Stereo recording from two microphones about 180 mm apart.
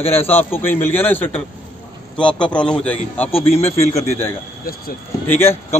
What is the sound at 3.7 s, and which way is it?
A man's voice, 15° left (ahead or behind).